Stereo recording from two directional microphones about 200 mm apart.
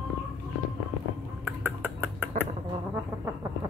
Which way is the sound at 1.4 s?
10° right (ahead or behind).